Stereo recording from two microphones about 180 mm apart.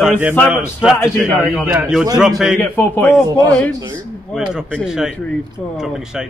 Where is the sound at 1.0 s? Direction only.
15° left (ahead or behind).